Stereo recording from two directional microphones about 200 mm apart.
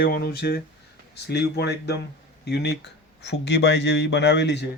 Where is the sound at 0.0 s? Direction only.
50° left (ahead or behind).